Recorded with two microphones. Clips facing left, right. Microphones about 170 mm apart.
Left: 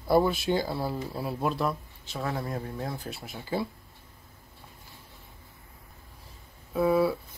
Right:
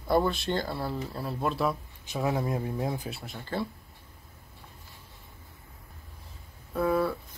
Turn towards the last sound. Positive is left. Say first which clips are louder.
# left 3 dB
turn(degrees=5)  # may be behind; listen again after turning